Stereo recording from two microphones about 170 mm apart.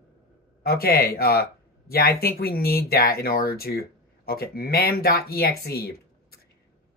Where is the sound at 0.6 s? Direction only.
65° left (ahead or behind).